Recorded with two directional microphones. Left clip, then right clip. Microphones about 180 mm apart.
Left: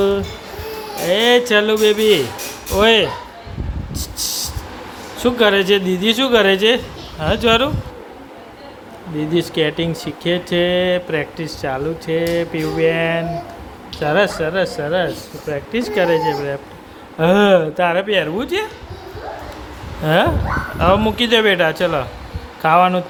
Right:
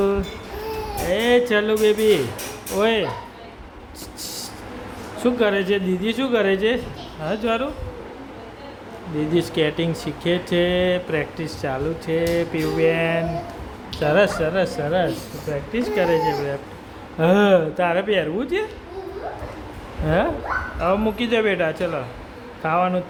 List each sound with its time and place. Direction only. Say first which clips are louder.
1.0 s speech: left 5 dB; 15° left (ahead or behind)
5.2 s speech: left 6 dB; 20° left (ahead or behind)
9.1 s speech: left 3 dB; 10° left (ahead or behind)
15.7 s speech: left 4 dB; 30° left (ahead or behind); by 18.6 s 10° left (ahead or behind)
20.1 s speech: left 5 dB; 15° left (ahead or behind)